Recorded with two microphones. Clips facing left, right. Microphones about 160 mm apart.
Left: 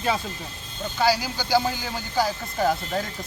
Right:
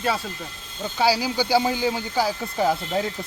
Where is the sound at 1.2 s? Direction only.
30° right (ahead or behind).